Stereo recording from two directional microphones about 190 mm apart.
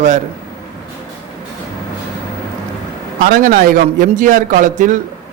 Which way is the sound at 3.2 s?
45° right (ahead or behind).